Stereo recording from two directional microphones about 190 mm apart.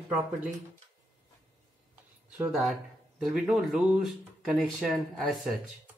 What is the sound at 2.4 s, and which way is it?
Speech, 5° right (ahead or behind).